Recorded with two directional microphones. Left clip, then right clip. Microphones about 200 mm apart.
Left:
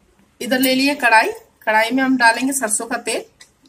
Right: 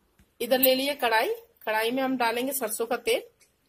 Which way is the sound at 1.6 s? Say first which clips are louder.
Left 11 dB; 20° right (ahead or behind).